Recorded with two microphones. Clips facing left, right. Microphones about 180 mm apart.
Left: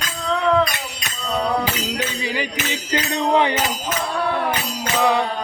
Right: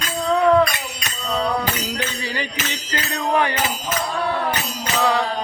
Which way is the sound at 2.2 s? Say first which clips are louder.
Left 2 dB; 15° left (ahead or behind).